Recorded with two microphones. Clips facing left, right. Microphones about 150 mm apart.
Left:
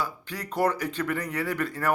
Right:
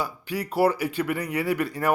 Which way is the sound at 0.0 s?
10° right (ahead or behind).